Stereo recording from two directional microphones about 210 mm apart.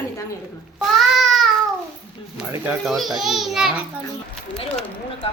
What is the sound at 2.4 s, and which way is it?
A child's voice, 5° right (ahead or behind).